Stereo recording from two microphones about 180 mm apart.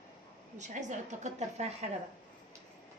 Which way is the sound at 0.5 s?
40° right (ahead or behind).